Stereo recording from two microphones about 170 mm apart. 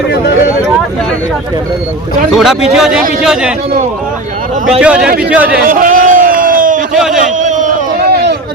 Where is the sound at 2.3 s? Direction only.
Centre (ahead or behind).